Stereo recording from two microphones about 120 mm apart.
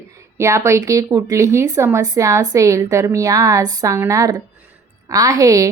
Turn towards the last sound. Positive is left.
turn(degrees=-30)  # may be behind; listen again after turning